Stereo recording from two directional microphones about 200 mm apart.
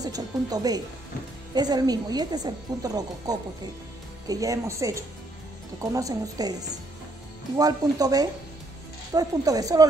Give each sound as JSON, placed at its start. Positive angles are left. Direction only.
{"t": 0.0, "sound": "speech", "side_deg": -20}
{"t": 7.5, "sound": "speech", "side_deg": -20}